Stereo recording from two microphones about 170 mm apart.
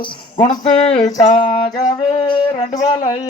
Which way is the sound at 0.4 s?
40° left (ahead or behind).